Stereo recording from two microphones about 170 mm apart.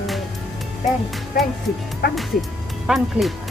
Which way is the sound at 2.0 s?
65° left (ahead or behind).